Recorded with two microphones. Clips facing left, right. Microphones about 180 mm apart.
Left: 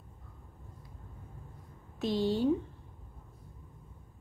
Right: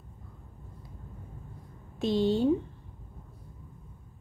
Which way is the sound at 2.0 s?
25° right (ahead or behind).